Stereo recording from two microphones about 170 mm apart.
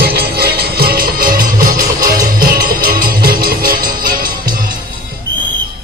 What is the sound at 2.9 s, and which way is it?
Music, 60° right (ahead or behind).